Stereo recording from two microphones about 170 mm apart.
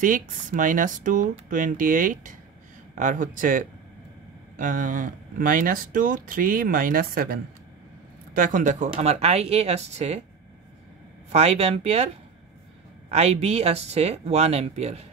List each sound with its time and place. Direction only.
0.0 s speech: 50° right (ahead or behind)
11.3 s speech: 40° right (ahead or behind)
13.1 s speech: 40° right (ahead or behind)